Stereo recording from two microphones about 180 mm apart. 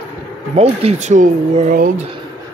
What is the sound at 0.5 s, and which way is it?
Speech, 35° right (ahead or behind).